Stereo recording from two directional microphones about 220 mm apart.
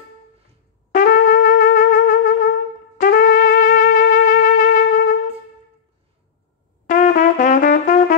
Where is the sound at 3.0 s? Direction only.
40° left (ahead or behind).